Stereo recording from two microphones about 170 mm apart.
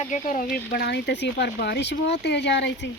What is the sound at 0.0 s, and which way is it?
Speech, 45° left (ahead or behind).